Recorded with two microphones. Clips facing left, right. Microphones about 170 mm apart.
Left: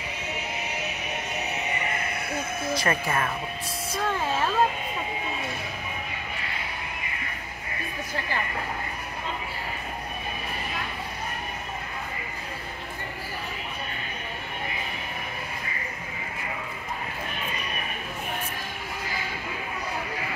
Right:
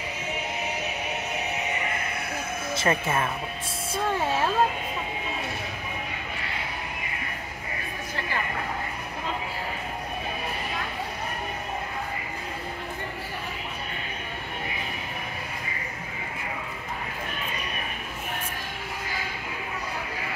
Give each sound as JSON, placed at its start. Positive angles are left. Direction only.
{"t": 2.7, "sound": "speech", "side_deg": -20}